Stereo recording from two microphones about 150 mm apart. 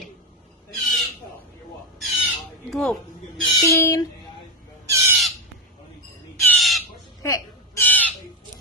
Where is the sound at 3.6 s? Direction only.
20° left (ahead or behind).